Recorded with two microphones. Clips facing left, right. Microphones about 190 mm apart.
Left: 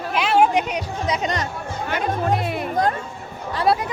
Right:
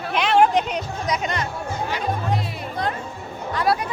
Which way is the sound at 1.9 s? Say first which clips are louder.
Left 5 dB; 55° left (ahead or behind).